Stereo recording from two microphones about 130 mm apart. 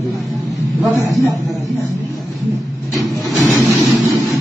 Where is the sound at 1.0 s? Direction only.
25° right (ahead or behind).